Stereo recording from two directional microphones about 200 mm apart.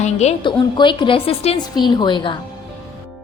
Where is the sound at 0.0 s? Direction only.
35° left (ahead or behind).